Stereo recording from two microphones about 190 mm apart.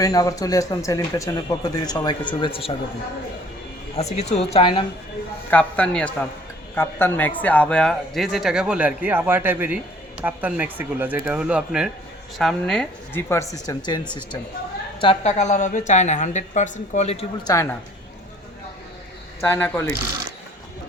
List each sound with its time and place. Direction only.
0.0 s speech: 20° left (ahead or behind)
3.9 s a woman's voice: 35° left (ahead or behind)
5.5 s speech: 5° left (ahead or behind); by 14.3 s 25° left (ahead or behind)
15.0 s a woman's voice: 35° left (ahead or behind)
17.4 s speech: 15° left (ahead or behind)
19.4 s speech: 10° left (ahead or behind)